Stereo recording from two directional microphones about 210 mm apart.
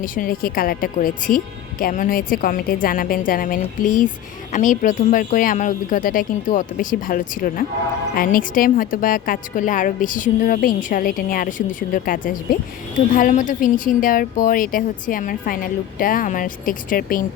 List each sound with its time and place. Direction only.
0.0 s a woman's voice: 40° left (ahead or behind)